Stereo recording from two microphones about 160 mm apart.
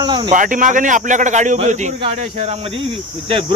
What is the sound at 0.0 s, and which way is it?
Speech, 25° right (ahead or behind).